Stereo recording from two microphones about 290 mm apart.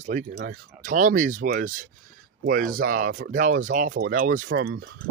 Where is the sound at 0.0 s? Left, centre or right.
Right.